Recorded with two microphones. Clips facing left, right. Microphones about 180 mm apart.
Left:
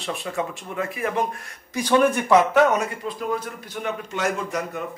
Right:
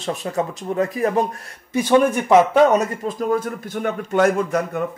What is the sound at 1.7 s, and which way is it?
Speech, 25° right (ahead or behind).